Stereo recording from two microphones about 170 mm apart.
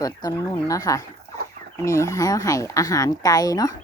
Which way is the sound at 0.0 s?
20° left (ahead or behind).